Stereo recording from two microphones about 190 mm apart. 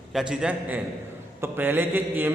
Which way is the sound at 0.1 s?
Centre (ahead or behind).